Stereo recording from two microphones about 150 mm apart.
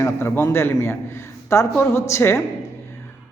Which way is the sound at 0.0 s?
15° left (ahead or behind).